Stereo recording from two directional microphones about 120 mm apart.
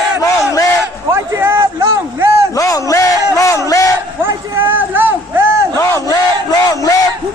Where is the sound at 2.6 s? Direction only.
30° left (ahead or behind).